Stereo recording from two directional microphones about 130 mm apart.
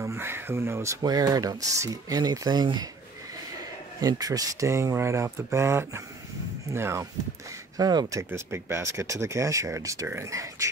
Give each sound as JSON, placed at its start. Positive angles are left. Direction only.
{"t": 0.0, "sound": "speech", "side_deg": -20}
{"t": 1.0, "sound": "speech", "side_deg": -30}
{"t": 4.0, "sound": "speech", "side_deg": -30}
{"t": 7.7, "sound": "speech", "side_deg": -30}